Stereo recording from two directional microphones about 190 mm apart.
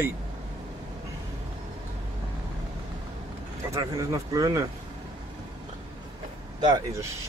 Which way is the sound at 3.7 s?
15° right (ahead or behind).